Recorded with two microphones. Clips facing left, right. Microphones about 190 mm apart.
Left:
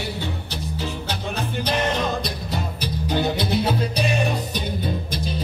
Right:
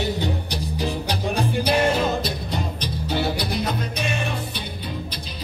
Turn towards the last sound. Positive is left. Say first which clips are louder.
# left 4 dB
turn(degrees=25)  # may be behind; listen again after turning